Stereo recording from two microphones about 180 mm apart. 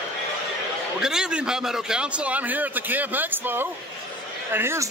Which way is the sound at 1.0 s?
5° right (ahead or behind).